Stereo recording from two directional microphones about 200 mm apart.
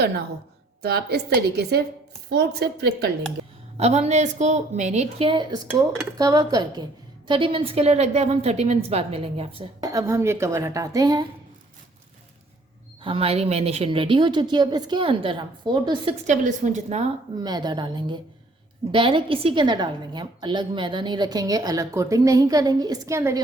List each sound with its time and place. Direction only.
0.8 s a woman's voice: 55° right (ahead or behind)
3.8 s a woman's voice: 30° right (ahead or behind)
13.0 s a woman's voice: 25° right (ahead or behind)
16.2 s a woman's voice: 40° right (ahead or behind)
17.4 s a woman's voice: 20° right (ahead or behind)